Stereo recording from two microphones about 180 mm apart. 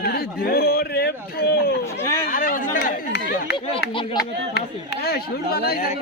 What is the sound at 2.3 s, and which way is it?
Speech, 50° left (ahead or behind).